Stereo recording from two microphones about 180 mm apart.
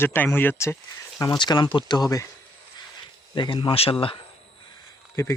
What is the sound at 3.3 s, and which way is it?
Speech, 25° left (ahead or behind).